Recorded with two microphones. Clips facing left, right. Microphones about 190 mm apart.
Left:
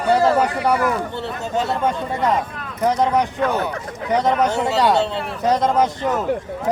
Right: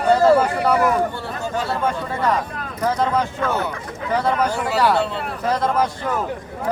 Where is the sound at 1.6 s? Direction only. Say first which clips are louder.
Left 3 dB; 20° left (ahead or behind).